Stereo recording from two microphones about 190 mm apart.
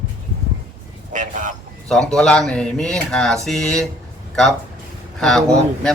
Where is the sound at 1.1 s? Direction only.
40° right (ahead or behind).